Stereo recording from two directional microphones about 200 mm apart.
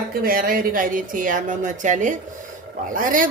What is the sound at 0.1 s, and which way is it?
Speech, 45° right (ahead or behind).